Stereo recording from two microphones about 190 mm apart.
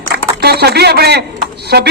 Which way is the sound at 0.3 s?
60° right (ahead or behind).